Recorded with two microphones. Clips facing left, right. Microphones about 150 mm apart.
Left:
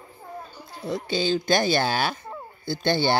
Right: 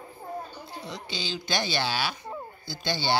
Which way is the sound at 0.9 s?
50° left (ahead or behind).